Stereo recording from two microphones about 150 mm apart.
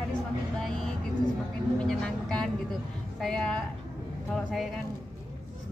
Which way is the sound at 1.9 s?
5° left (ahead or behind).